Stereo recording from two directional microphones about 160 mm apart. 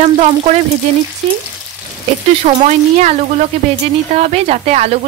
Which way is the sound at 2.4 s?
50° right (ahead or behind).